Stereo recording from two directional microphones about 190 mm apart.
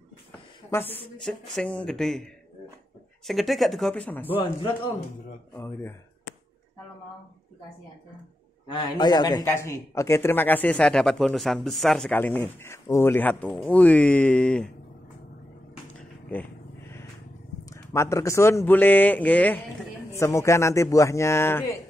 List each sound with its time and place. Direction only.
0.7 s a woman's voice: 10° left (ahead or behind)
4.4 s speech: 25° left (ahead or behind)
5.5 s a sound: 10° left (ahead or behind)
8.6 s a man's voice: 25° left (ahead or behind); by 14.7 s 5° left (ahead or behind)
17.6 s a man's voice: 15° left (ahead or behind)